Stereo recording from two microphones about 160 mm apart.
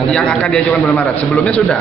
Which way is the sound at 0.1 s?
5° left (ahead or behind).